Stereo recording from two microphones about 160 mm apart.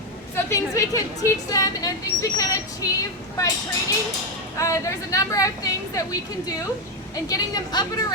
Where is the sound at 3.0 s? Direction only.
20° left (ahead or behind).